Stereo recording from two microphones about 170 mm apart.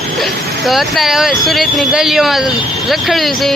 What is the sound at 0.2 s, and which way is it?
Speech, centre (ahead or behind).